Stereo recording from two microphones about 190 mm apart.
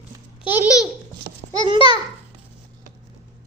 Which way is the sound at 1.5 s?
25° right (ahead or behind).